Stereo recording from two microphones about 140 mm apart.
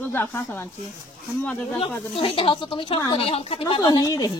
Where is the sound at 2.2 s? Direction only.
40° left (ahead or behind).